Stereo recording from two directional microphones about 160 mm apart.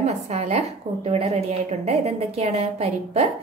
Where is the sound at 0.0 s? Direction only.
45° right (ahead or behind).